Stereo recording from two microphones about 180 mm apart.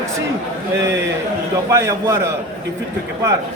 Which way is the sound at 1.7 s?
15° right (ahead or behind).